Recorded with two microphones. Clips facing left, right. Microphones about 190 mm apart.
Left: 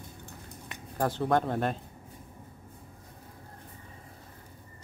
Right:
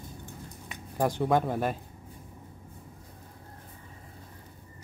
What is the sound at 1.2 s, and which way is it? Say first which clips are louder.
Speech: left 1 dB; 5° right (ahead or behind).